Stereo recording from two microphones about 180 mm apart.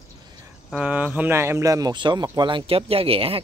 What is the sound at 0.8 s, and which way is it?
Speech, 10° right (ahead or behind).